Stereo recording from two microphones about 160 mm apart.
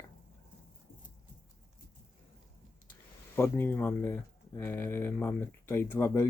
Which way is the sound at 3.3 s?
15° left (ahead or behind).